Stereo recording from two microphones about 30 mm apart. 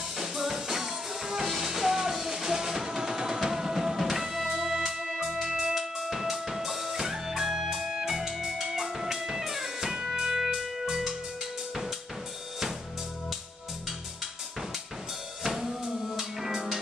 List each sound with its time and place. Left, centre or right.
0.2 s music: centre
15.4 s drum: centre
15.8 s music: right
16.1 s music: centre